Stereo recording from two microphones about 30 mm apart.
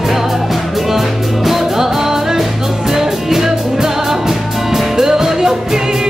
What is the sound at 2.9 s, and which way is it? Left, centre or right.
Music, centre.